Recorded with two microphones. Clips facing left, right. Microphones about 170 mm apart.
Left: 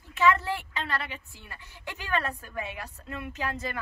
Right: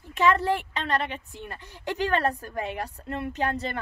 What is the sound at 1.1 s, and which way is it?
Speech, 55° right (ahead or behind).